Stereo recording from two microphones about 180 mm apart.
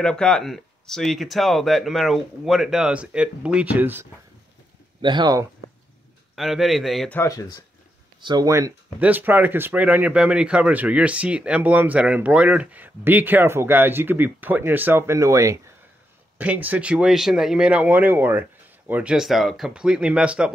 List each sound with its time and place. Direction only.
0.0 s speech: 5° left (ahead or behind); by 4.1 s 10° right (ahead or behind)
5.0 s speech: 25° right (ahead or behind)
6.3 s speech: centre (ahead or behind)
7.2 s speech: 20° left (ahead or behind)
8.2 s speech: 20° right (ahead or behind); by 20.5 s 5° right (ahead or behind)